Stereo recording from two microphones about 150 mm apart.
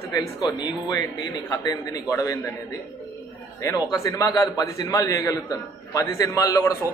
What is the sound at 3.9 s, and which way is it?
A man's voice, 20° left (ahead or behind).